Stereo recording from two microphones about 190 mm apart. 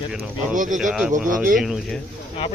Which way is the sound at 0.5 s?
40° right (ahead or behind).